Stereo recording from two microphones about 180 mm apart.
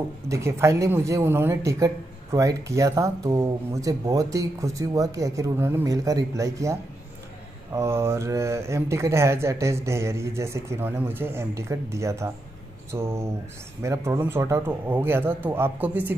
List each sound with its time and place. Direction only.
0.3 s speech: 15° right (ahead or behind)